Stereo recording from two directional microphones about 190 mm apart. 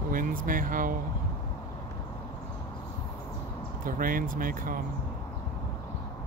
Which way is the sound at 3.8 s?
45° right (ahead or behind).